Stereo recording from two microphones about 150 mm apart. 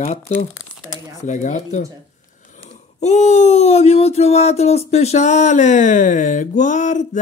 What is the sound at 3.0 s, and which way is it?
Speech, 50° left (ahead or behind).